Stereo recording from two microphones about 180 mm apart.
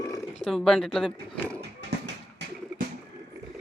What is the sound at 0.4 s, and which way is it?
Speech, centre (ahead or behind).